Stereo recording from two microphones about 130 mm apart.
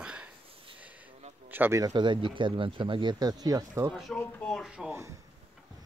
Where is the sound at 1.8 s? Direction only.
30° right (ahead or behind).